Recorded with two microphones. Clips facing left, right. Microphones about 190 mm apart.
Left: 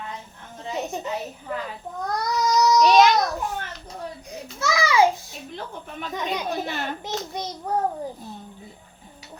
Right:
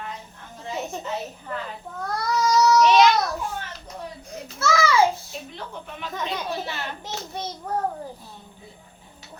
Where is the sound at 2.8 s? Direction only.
40° left (ahead or behind).